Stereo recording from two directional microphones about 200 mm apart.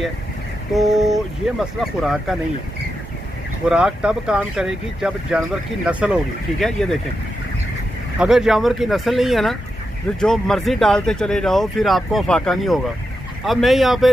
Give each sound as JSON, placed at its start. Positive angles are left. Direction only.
{"t": 0.7, "sound": "speech", "side_deg": 0}
{"t": 3.6, "sound": "speech", "side_deg": -5}
{"t": 8.2, "sound": "speech", "side_deg": 0}